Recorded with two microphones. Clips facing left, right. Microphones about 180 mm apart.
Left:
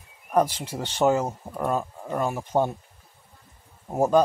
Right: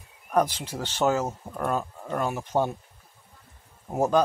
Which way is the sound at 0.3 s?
10° left (ahead or behind).